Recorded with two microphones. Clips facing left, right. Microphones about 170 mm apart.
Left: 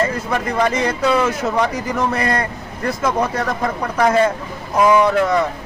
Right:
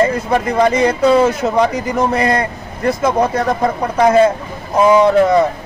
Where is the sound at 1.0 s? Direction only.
30° right (ahead or behind).